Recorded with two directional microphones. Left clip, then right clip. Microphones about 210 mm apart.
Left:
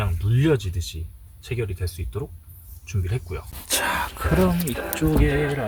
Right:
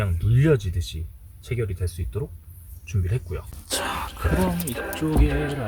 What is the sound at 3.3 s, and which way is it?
Speech, 15° left (ahead or behind).